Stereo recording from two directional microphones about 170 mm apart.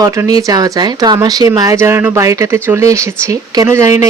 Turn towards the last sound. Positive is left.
turn(degrees=-20)  # may be behind; listen again after turning